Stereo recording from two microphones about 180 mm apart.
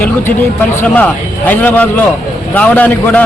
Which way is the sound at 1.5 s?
10° left (ahead or behind).